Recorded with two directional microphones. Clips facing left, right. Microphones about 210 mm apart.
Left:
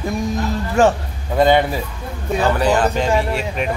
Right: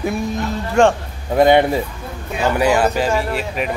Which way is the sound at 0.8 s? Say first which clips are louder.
Right 1 dB; 5° left (ahead or behind).